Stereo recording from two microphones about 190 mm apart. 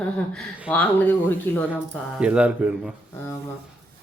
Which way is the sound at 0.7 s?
10° left (ahead or behind).